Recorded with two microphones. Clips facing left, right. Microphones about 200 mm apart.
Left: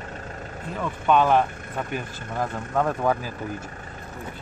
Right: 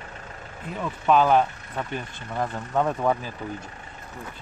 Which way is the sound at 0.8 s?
Centre (ahead or behind).